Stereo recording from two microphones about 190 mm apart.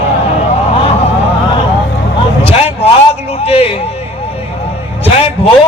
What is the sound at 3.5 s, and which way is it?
Speech, 30° left (ahead or behind).